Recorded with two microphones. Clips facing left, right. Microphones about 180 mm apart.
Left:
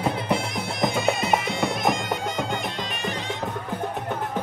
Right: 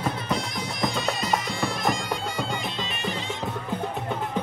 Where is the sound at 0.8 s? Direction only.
25° left (ahead or behind).